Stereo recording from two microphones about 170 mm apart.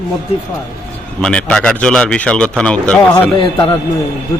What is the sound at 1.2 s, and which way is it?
Speech, 5° left (ahead or behind).